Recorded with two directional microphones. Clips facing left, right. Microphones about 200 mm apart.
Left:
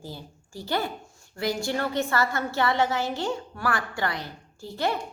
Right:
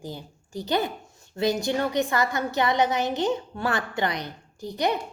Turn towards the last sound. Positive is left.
turn(degrees=-15)  # may be behind; listen again after turning